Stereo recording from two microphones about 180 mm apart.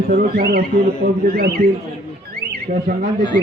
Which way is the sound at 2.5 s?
50° right (ahead or behind).